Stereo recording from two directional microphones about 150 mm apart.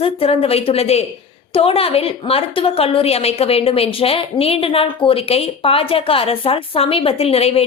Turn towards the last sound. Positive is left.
turn(degrees=40)  # may be behind; listen again after turning